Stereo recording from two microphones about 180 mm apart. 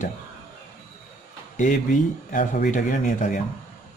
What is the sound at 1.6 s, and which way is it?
Speech, 45° left (ahead or behind).